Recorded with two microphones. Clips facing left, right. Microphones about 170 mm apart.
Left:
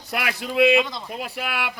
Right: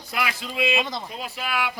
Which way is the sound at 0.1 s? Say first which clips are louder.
Left 2 dB; 65° left (ahead or behind).